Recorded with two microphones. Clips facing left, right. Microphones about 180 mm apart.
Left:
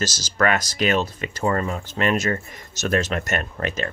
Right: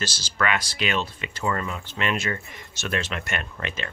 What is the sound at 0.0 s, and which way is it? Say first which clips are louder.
Speech: left 5 dB; 40° left (ahead or behind).